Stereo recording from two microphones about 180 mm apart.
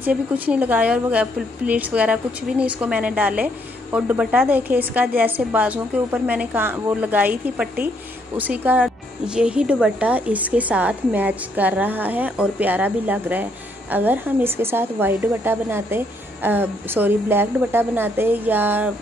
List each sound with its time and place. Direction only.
0.0 s speech: 10° right (ahead or behind)